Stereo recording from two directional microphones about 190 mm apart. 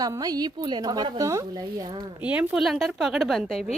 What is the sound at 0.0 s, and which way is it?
A woman's voice, 20° right (ahead or behind).